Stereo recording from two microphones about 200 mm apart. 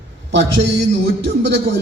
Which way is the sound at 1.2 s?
60° right (ahead or behind).